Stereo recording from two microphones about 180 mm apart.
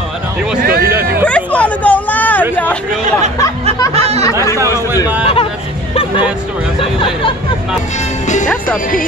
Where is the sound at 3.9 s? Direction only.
35° right (ahead or behind).